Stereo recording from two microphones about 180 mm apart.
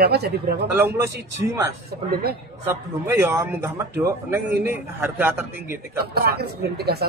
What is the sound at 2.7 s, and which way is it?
A man's voice, 10° right (ahead or behind).